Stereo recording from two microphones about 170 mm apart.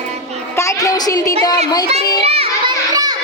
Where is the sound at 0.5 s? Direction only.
20° left (ahead or behind).